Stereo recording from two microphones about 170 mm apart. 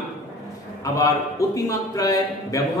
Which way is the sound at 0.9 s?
20° left (ahead or behind).